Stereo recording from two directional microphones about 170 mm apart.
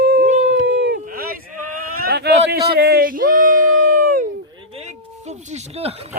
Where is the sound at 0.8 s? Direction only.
65° right (ahead or behind).